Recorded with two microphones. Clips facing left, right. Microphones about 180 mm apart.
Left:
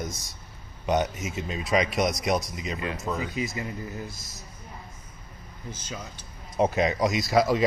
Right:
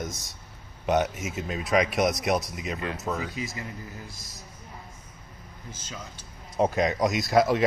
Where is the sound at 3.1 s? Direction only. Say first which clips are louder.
Left 2 dB; 15° left (ahead or behind).